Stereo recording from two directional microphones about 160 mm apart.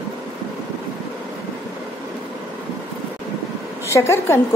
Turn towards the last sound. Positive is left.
turn(degrees=15)  # may be behind; listen again after turning